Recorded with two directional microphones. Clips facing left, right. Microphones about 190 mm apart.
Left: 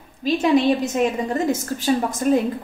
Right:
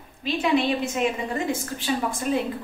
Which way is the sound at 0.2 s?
40° left (ahead or behind).